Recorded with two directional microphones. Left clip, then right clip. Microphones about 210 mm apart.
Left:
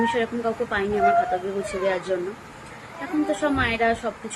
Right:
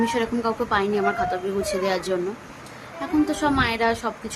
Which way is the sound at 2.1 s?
25° right (ahead or behind).